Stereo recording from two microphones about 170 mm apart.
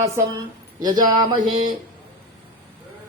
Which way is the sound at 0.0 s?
25° right (ahead or behind).